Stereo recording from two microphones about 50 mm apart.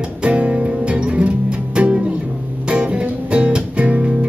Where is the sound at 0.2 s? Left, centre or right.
Right.